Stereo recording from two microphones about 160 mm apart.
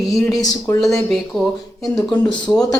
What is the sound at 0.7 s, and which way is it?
Speech, centre (ahead or behind).